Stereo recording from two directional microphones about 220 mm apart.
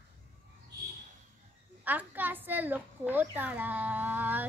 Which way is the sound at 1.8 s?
10° right (ahead or behind).